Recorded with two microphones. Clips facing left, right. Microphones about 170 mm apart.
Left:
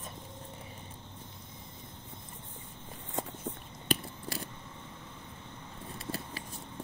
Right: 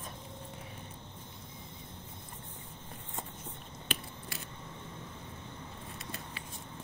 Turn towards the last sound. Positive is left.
turn(degrees=35)  # may be behind; listen again after turning